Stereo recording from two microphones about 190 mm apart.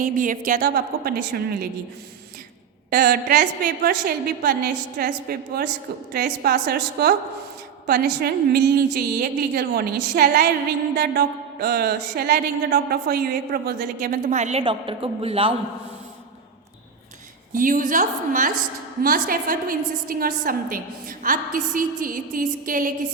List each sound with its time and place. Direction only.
0.0 s speech: 45° right (ahead or behind)
2.9 s a woman's voice: 50° right (ahead or behind); by 15.5 s 30° right (ahead or behind)
17.5 s speech: 45° right (ahead or behind)